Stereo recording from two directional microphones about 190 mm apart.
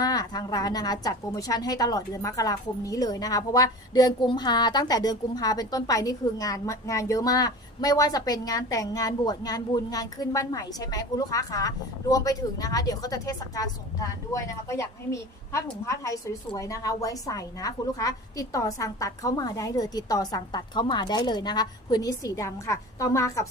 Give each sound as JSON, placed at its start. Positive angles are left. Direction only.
{"t": 0.0, "sound": "a woman's voice", "side_deg": 20}